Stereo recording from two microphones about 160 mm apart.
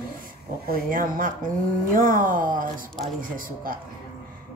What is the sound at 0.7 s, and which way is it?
Speech, 60° right (ahead or behind).